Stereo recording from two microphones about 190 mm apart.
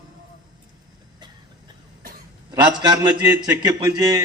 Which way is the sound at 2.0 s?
50° right (ahead or behind).